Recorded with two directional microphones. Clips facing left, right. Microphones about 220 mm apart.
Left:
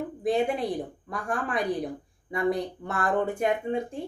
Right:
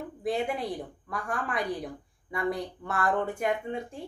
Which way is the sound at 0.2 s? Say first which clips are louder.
Left 4 dB; 20° left (ahead or behind).